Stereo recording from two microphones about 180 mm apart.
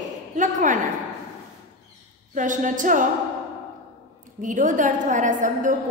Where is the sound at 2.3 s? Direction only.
45° right (ahead or behind).